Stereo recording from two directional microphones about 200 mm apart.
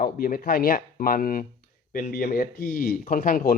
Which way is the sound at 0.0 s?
50° left (ahead or behind).